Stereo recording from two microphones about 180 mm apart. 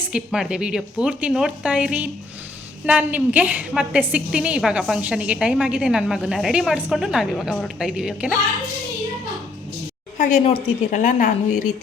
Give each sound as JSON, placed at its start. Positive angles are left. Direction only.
{"t": 0.1, "sound": "a woman's voice", "side_deg": -5}
{"t": 10.2, "sound": "a woman's voice", "side_deg": 35}